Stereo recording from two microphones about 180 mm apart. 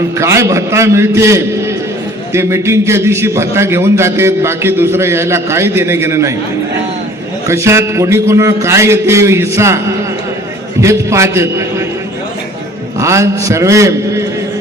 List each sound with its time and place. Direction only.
0.2 s a man's voice: 15° right (ahead or behind)
7.4 s a man's voice: 15° right (ahead or behind)
13.0 s a man's voice: 15° right (ahead or behind)